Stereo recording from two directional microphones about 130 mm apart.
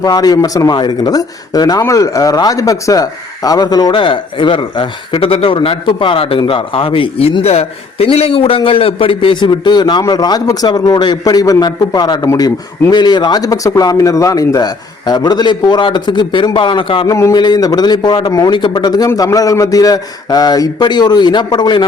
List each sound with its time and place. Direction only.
0.0 s a man's voice: 30° left (ahead or behind)
17.1 s speech: 20° left (ahead or behind)
17.3 s a man's voice: 35° left (ahead or behind)